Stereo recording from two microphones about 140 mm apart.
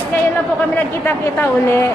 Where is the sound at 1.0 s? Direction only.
15° left (ahead or behind).